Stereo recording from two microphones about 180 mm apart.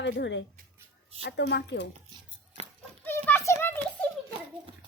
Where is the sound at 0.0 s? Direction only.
75° left (ahead or behind).